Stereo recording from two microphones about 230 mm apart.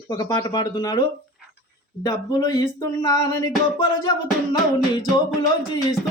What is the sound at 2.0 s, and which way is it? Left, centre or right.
Speech, centre.